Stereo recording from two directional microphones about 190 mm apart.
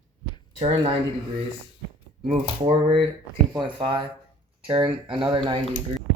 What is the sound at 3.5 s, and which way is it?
Speech, 25° right (ahead or behind).